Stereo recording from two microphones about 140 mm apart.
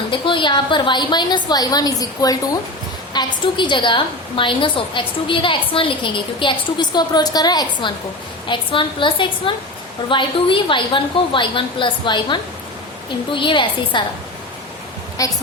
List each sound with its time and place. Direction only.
0.1 s a woman's voice: 35° left (ahead or behind)
15.2 s speech: 25° left (ahead or behind)